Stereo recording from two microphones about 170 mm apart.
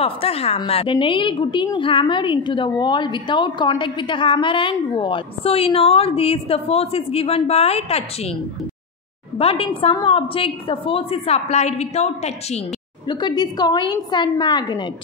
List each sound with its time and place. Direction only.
0.0 s a woman's voice: 35° left (ahead or behind)
9.4 s a woman's voice: 35° left (ahead or behind)
13.1 s a woman's voice: 25° left (ahead or behind)